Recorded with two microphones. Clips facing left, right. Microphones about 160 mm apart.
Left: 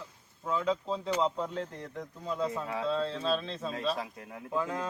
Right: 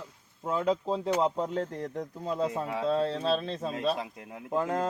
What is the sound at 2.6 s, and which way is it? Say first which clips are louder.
Speech: right 3 dB; 15° right (ahead or behind).